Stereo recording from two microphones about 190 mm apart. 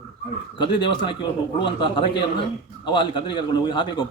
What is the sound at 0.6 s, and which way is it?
A man's voice, 25° left (ahead or behind).